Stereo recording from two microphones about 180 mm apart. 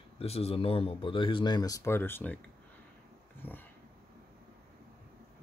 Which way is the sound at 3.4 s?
10° left (ahead or behind).